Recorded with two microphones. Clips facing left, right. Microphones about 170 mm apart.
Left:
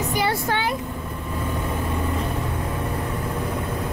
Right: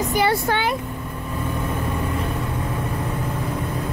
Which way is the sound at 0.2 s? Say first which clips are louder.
Right 3 dB; 70° right (ahead or behind).